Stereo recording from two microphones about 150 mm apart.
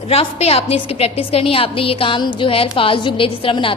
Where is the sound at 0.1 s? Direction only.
40° left (ahead or behind).